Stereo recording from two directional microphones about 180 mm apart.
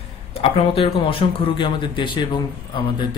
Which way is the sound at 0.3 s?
30° left (ahead or behind).